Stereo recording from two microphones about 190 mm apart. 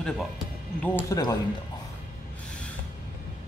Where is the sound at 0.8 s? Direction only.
15° left (ahead or behind).